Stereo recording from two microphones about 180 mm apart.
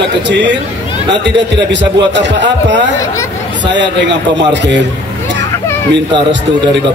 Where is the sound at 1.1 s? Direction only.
80° right.